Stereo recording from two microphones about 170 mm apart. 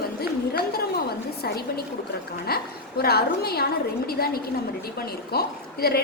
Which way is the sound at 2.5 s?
65° left (ahead or behind).